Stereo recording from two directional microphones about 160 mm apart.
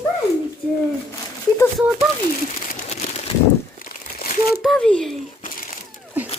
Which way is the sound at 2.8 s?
45° left (ahead or behind).